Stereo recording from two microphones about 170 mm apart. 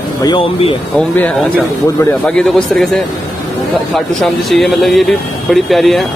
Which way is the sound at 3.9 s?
Centre (ahead or behind).